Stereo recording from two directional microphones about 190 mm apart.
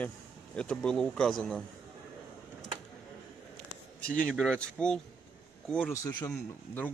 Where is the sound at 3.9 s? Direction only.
5° left (ahead or behind).